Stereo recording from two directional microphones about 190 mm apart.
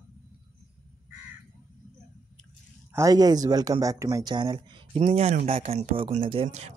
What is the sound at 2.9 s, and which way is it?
Speech, 15° right (ahead or behind).